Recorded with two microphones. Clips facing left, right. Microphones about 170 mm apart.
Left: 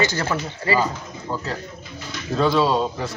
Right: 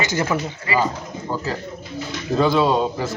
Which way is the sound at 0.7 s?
35° left (ahead or behind).